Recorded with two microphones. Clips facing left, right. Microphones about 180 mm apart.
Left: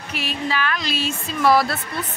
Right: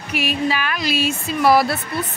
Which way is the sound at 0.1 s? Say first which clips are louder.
Right 5 dB; 10° right (ahead or behind).